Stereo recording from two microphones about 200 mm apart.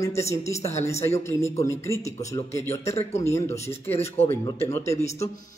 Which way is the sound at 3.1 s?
15° left (ahead or behind).